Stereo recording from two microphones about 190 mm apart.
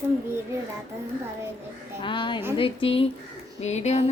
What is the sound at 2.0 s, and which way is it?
Speech, 25° left (ahead or behind).